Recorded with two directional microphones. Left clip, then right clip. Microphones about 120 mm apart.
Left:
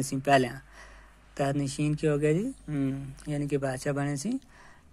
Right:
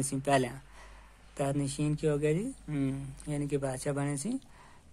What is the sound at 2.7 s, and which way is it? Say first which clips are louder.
Speech: left 1 dB; 15° left (ahead or behind).